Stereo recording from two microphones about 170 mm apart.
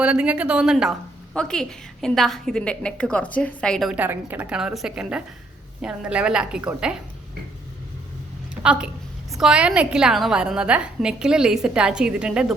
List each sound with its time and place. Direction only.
0.0 s a woman's voice: 5° right (ahead or behind)
3.9 s a woman's voice: 10° right (ahead or behind)
8.6 s a woman's voice: 5° right (ahead or behind)